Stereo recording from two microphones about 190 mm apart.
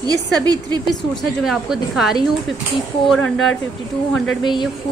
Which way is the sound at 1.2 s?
Centre (ahead or behind).